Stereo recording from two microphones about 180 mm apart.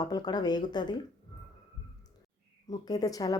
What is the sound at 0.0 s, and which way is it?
Speech, 20° left (ahead or behind).